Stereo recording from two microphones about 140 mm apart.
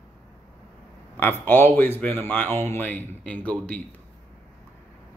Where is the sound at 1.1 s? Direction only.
10° left (ahead or behind).